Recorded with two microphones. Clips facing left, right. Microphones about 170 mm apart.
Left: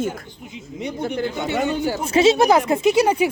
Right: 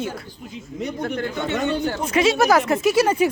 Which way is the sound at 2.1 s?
25° left (ahead or behind).